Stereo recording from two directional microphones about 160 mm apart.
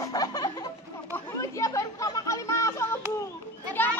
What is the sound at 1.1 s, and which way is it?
Chatter, 20° left (ahead or behind).